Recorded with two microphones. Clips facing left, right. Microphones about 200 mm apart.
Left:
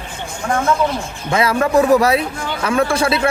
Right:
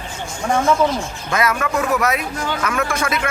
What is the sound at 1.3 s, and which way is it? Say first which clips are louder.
A man's voice: left 5 dB; 30° left (ahead or behind).